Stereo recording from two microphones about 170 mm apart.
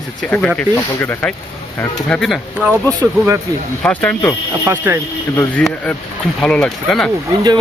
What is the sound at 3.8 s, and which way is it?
Speech, 10° left (ahead or behind).